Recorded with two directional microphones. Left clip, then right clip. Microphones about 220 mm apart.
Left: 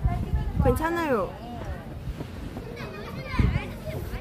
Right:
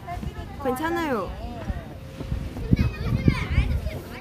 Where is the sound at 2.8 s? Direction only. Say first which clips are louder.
Right 4 dB; 55° right (ahead or behind).